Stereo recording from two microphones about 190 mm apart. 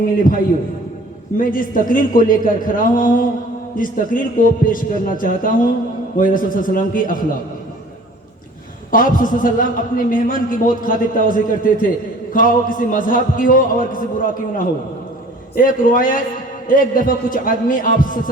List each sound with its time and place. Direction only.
1.4 s a man's voice: 45° left (ahead or behind)
8.9 s a man's voice: 45° left (ahead or behind)